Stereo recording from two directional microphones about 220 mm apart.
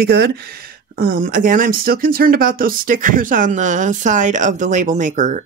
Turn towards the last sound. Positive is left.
turn(degrees=-35)  # may be behind; listen again after turning